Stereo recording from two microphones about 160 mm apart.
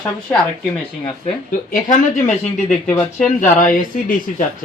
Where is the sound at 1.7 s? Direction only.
55° left (ahead or behind).